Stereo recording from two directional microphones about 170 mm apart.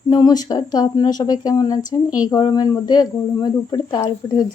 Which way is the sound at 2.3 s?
20° left (ahead or behind).